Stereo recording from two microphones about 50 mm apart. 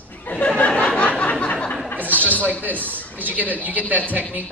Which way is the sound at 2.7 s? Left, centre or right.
Left.